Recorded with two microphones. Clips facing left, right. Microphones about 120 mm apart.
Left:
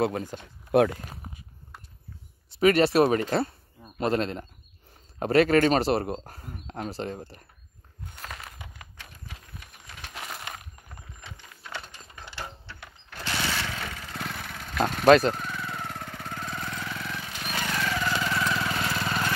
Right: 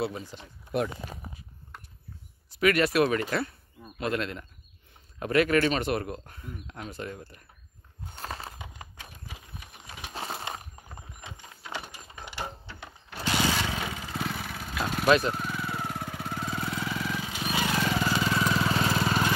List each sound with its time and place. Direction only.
0.0 s speech: 50° left (ahead or behind)
0.7 s speech: 90° left
2.5 s speech: 30° left (ahead or behind)
8.1 s a sound: 30° right (ahead or behind)
10.1 s a sound: 30° right (ahead or behind); by 12.4 s 15° right (ahead or behind)
12.6 s lawn mower: 15° right (ahead or behind)
15.0 s speech: 40° left (ahead or behind)
15.3 s vehicle: 10° right (ahead or behind)
18.8 s lawn mower: 20° right (ahead or behind)